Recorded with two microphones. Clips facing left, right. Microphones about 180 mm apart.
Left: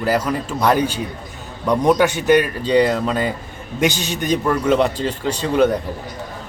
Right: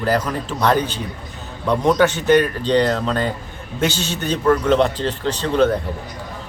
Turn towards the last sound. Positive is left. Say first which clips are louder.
# left 1 dB
turn(degrees=10)  # may be behind; listen again after turning